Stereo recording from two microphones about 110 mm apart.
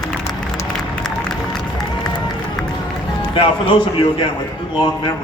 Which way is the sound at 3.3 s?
50° left (ahead or behind).